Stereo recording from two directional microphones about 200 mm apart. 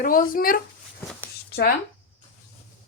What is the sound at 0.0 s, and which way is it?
Speech, 45° left (ahead or behind).